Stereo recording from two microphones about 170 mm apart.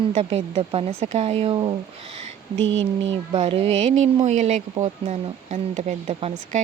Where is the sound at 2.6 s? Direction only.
90° right.